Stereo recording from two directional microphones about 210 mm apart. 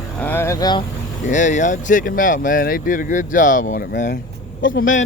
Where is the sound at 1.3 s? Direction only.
35° left (ahead or behind).